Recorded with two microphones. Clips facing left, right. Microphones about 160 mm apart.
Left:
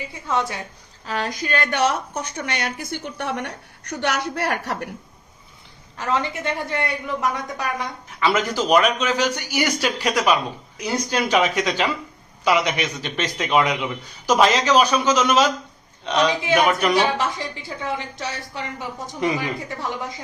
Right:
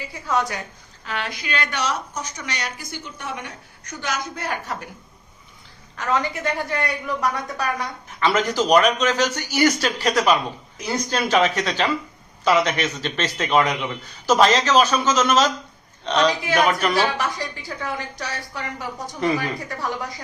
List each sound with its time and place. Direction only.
0.3 s a woman's voice: 25° left (ahead or behind)
1.0 s a woman's voice: 40° left (ahead or behind); by 4.9 s 70° left (ahead or behind)
6.0 s a woman's voice: 25° left (ahead or behind)
8.2 s speech: 10° left (ahead or behind)
16.4 s a woman's voice: 20° left (ahead or behind)